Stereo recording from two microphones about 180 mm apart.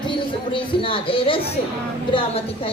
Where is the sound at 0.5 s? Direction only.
30° left (ahead or behind).